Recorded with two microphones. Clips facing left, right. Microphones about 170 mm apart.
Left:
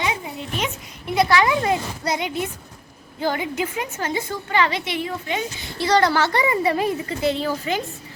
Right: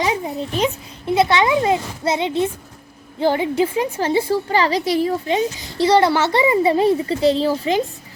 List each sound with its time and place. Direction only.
0.0 s a woman's voice: 35° right (ahead or behind)
5.8 s a child's voice: 25° right (ahead or behind)